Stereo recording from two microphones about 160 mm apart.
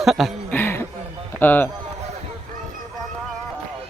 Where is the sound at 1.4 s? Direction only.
10° left (ahead or behind).